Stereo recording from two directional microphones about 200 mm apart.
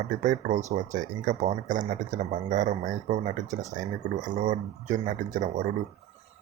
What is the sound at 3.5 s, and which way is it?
Speech, 15° right (ahead or behind).